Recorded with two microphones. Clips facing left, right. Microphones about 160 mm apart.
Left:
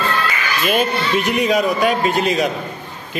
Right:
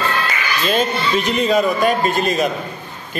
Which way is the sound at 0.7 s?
10° left (ahead or behind).